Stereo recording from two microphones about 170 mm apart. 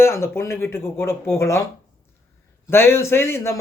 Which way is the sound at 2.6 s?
15° left (ahead or behind).